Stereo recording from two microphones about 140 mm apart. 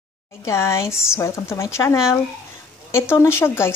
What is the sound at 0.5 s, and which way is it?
Speech, 20° left (ahead or behind).